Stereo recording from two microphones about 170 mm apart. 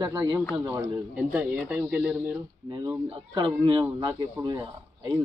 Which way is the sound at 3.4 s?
25° right (ahead or behind).